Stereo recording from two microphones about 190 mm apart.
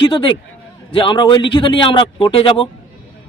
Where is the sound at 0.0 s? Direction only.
25° left (ahead or behind).